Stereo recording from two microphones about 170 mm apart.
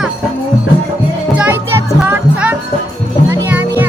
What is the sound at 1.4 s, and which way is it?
Music, 10° right (ahead or behind).